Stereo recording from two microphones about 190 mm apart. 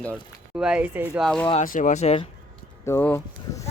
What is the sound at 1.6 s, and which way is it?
Speech, 45° left (ahead or behind).